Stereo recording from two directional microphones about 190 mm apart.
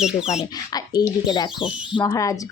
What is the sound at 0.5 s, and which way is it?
Speech, 20° left (ahead or behind).